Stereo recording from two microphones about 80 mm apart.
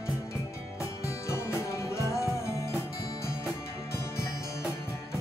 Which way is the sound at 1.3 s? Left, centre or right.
Left.